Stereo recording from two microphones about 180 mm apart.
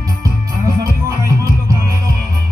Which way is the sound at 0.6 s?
20° right (ahead or behind).